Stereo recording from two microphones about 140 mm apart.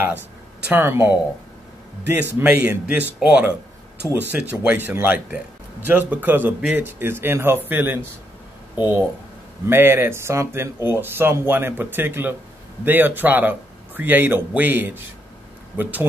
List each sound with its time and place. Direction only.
0.7 s speech: 15° right (ahead or behind)